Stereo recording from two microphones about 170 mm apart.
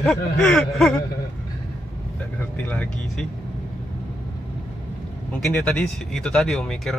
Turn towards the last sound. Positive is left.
turn(degrees=0)  # may be behind; listen again after turning